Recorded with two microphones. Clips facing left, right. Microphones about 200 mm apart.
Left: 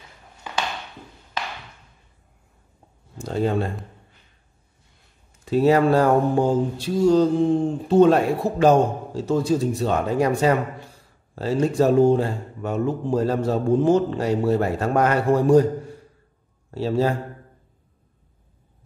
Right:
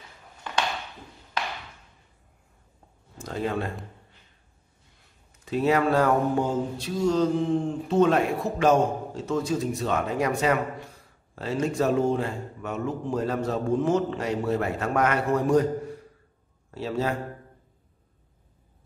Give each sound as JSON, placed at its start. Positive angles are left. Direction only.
{"t": 3.2, "sound": "speech", "side_deg": 30}
{"t": 5.4, "sound": "mantra", "side_deg": 35}
{"t": 16.7, "sound": "mantra", "side_deg": 35}